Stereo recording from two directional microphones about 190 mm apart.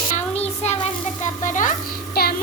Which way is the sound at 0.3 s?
35° left (ahead or behind).